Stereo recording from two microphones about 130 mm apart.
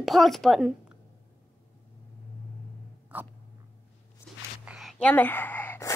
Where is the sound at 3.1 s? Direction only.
15° right (ahead or behind).